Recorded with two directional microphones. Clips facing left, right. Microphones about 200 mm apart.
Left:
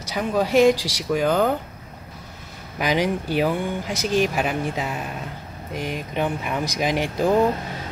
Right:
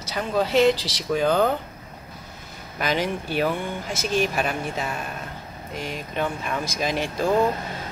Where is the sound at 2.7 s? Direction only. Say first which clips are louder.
Left 3 dB; 15° left (ahead or behind).